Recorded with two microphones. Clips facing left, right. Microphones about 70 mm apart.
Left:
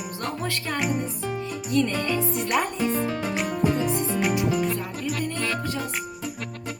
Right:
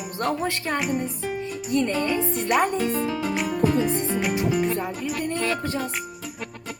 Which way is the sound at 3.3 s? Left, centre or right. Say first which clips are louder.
Right 1 dB; centre.